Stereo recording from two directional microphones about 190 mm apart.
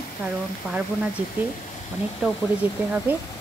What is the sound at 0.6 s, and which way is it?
Speech, 5° right (ahead or behind).